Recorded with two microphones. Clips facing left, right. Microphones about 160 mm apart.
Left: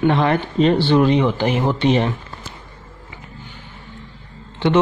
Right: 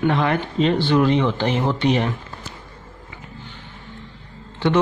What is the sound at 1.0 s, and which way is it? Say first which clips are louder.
Speech: left 2 dB; 15° left (ahead or behind).